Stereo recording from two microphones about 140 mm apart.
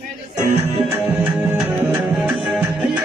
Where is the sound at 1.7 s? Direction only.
15° right (ahead or behind).